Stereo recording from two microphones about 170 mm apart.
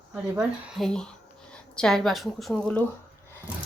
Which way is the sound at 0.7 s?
Centre (ahead or behind).